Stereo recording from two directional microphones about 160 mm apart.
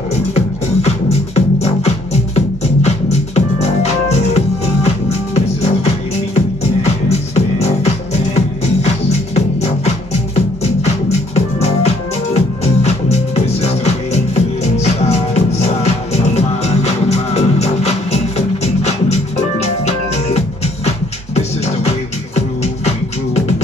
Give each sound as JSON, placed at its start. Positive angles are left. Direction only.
{"t": 0.8, "sound": "music", "side_deg": 40}
{"t": 6.3, "sound": "music", "side_deg": 40}